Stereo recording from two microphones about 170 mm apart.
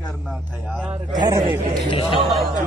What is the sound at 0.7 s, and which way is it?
Speech, 10° right (ahead or behind).